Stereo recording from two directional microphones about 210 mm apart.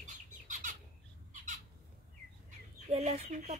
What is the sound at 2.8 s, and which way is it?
Speech, 30° right (ahead or behind).